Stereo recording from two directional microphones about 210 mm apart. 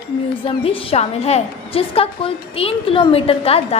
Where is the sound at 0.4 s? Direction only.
25° left (ahead or behind).